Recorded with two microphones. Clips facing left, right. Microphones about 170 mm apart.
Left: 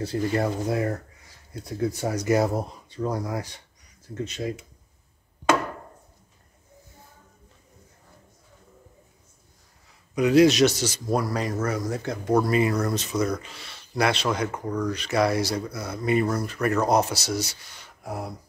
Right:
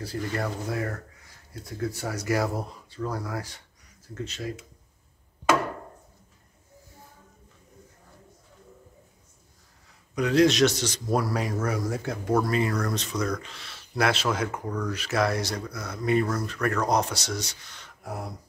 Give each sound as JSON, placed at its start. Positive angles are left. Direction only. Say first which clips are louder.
{"t": 0.0, "sound": "speech", "louder": "left 6 dB", "side_deg": 25}
{"t": 10.1, "sound": "speech", "louder": "left 3 dB", "side_deg": 5}
{"t": 11.2, "sound": "speech", "louder": "left 1 dB", "side_deg": -5}
{"t": 12.4, "sound": "speech", "louder": "left 4 dB", "side_deg": 10}